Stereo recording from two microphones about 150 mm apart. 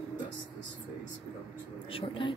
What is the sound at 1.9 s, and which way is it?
Vehicle, 35° left (ahead or behind).